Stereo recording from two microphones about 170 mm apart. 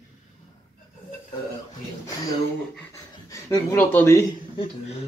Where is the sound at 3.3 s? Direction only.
20° left (ahead or behind).